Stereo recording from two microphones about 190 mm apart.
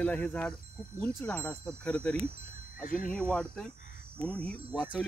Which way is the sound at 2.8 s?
45° left (ahead or behind).